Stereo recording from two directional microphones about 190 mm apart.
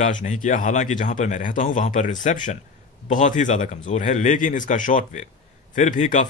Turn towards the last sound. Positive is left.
turn(degrees=40)  # may be behind; listen again after turning